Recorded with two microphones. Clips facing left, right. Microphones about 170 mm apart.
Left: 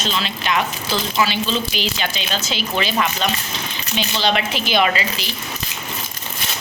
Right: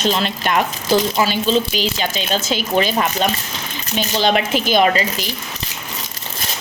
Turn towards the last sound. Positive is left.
turn(degrees=-45)  # may be behind; listen again after turning